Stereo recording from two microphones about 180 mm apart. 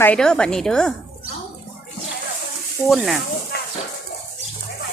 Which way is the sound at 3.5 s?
60° left (ahead or behind).